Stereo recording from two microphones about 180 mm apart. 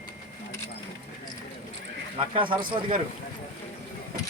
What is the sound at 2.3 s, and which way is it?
Speech, 30° right (ahead or behind).